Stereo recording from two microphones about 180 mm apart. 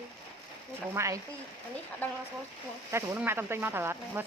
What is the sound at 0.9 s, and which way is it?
Speech, 15° right (ahead or behind).